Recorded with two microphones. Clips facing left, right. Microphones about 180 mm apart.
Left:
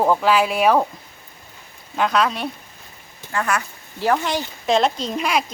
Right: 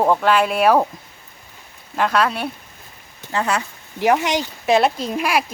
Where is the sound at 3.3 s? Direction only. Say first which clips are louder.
Right 2 dB; 25° right (ahead or behind).